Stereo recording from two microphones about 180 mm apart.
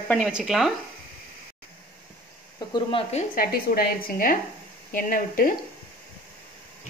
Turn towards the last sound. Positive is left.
turn(degrees=50)  # may be behind; listen again after turning